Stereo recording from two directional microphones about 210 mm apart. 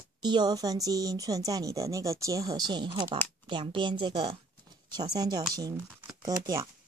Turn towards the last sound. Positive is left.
turn(degrees=-20)  # may be behind; listen again after turning